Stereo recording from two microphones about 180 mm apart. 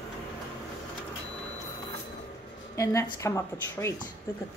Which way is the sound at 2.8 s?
15° left (ahead or behind).